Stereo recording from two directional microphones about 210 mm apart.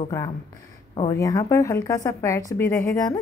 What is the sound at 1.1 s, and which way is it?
A woman's voice, 15° left (ahead or behind).